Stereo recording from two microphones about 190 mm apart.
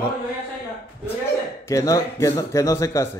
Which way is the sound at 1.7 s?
15° left (ahead or behind).